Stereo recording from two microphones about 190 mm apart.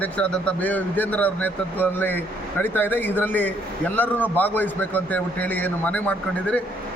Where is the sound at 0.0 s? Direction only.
5° left (ahead or behind).